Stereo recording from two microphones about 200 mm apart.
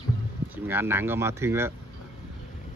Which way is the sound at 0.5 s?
10° right (ahead or behind).